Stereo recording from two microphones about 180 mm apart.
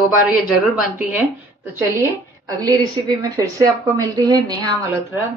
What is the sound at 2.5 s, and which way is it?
A woman's voice, 20° right (ahead or behind).